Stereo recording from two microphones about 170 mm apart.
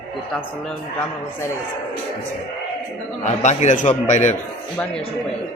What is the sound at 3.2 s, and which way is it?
A man's voice, 45° left (ahead or behind).